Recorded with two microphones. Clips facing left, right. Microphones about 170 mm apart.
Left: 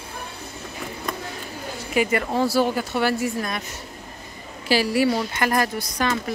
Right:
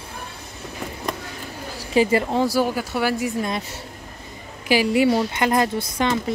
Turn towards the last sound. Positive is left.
turn(degrees=-20)  # may be behind; listen again after turning